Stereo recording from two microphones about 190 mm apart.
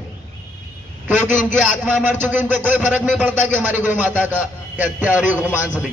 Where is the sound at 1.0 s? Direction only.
10° right (ahead or behind).